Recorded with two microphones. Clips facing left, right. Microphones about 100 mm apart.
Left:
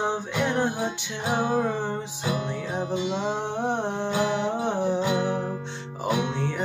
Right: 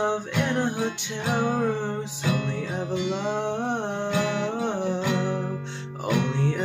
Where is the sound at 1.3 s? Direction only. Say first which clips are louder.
Left 1 dB; 30° left (ahead or behind).